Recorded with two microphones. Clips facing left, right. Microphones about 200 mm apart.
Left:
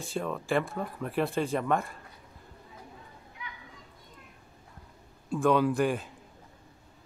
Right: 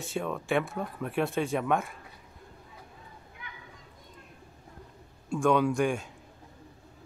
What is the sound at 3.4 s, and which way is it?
Children playing, 50° right (ahead or behind).